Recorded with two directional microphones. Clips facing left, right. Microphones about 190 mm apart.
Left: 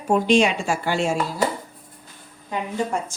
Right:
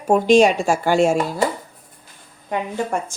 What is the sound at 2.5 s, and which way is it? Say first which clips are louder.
Speech: right 2 dB; 55° right (ahead or behind).